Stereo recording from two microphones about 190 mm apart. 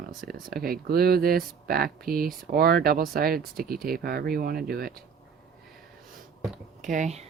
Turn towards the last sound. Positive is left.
turn(degrees=-35)  # may be behind; listen again after turning